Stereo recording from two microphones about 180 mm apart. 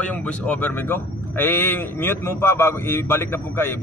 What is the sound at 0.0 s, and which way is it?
Speech, 10° left (ahead or behind).